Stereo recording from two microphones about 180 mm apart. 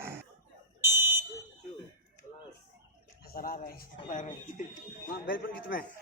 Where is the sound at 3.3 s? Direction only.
55° left (ahead or behind).